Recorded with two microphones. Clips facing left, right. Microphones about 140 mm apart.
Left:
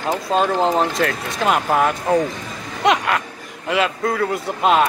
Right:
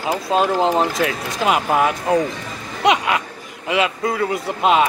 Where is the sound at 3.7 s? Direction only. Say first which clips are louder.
Even; centre (ahead or behind).